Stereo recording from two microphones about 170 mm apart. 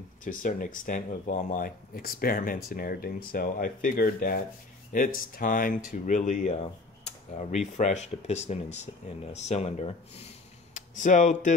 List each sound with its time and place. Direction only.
0.2 s speech: 50° left (ahead or behind)